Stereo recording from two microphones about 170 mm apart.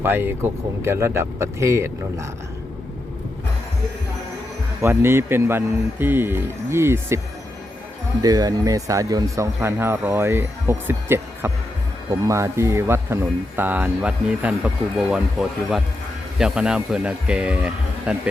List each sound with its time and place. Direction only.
0.0 s speech: 15° right (ahead or behind)
4.8 s speech: 15° right (ahead or behind)
8.2 s speech: 20° right (ahead or behind)